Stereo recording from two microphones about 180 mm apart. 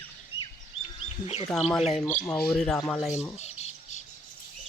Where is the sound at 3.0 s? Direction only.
5° right (ahead or behind).